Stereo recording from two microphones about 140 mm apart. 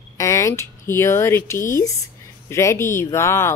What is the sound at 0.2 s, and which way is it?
Speech, 20° left (ahead or behind).